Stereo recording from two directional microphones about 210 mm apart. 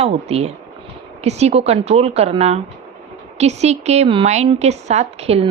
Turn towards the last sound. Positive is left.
turn(degrees=-30)  # may be behind; listen again after turning